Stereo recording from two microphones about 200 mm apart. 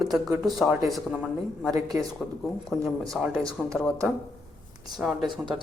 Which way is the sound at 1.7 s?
20° right (ahead or behind).